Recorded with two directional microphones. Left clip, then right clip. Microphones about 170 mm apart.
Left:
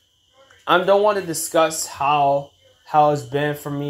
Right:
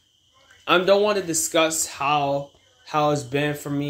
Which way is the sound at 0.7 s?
20° right (ahead or behind).